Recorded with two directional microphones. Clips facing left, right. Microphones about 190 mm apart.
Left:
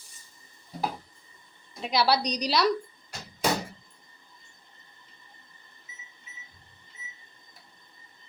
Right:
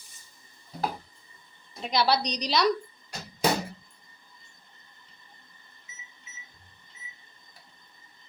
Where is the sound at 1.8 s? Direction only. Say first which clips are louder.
Even; 5° left (ahead or behind).